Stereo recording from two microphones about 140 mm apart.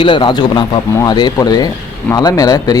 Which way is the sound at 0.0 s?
35° left (ahead or behind).